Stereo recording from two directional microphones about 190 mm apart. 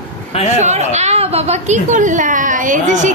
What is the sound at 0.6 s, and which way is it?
A woman's voice, 35° right (ahead or behind).